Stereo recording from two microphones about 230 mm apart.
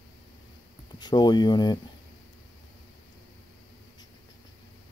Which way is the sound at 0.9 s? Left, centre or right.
Centre.